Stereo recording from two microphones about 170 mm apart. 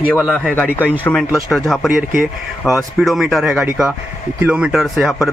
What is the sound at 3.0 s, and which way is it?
Speech, centre (ahead or behind).